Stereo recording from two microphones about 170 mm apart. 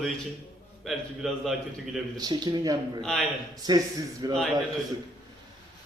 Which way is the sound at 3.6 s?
25° right (ahead or behind).